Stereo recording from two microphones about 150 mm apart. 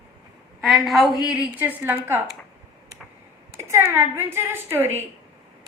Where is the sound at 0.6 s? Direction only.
Centre (ahead or behind).